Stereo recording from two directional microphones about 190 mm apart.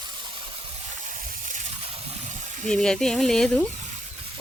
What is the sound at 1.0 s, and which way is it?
Water, 45° right (ahead or behind).